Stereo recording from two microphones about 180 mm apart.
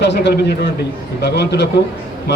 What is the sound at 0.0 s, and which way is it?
A man's voice, 75° left (ahead or behind).